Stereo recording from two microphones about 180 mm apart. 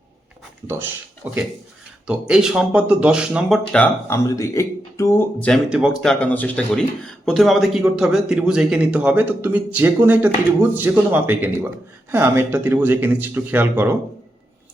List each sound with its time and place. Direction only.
0.7 s speech: 10° right (ahead or behind)
3.7 s speech: 10° left (ahead or behind)
5.6 s speech: 5° right (ahead or behind)